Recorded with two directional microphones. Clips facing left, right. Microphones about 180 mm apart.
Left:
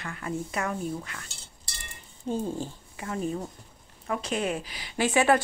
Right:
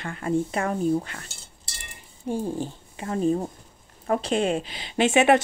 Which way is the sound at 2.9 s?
30° right (ahead or behind).